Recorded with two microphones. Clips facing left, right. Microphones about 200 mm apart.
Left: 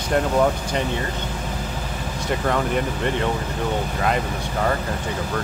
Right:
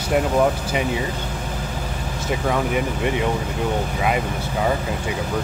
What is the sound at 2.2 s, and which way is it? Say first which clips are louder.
Speech: even; 5° right (ahead or behind).